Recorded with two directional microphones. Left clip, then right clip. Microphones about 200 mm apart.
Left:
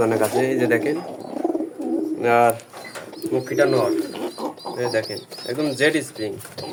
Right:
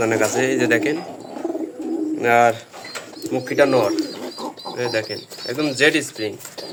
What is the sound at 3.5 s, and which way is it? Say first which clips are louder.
Speech: right 3 dB; 30° right (ahead or behind).